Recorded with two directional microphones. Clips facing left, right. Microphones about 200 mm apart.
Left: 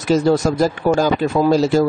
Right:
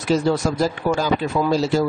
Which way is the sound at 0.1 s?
45° left (ahead or behind).